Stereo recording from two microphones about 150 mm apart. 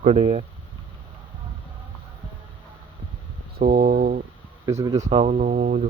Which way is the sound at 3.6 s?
70° right (ahead or behind).